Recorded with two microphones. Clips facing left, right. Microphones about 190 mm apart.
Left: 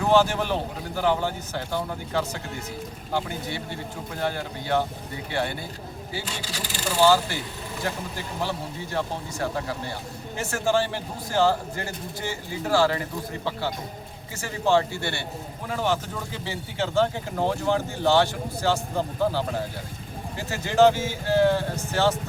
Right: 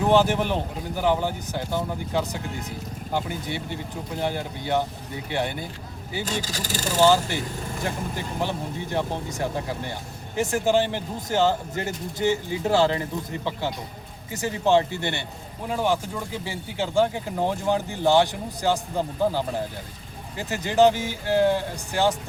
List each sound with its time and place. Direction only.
0.1 s speech: 15° right (ahead or behind)
6.2 s speech: 40° right (ahead or behind)
7.0 s speech: 20° right (ahead or behind)
14.3 s speech: 20° right (ahead or behind)
20.5 s speech: 15° right (ahead or behind)